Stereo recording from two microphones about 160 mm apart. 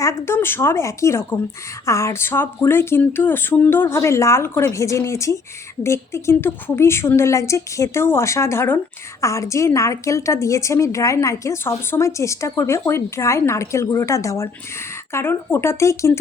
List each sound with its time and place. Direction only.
0.0 s a woman's voice: 20° left (ahead or behind)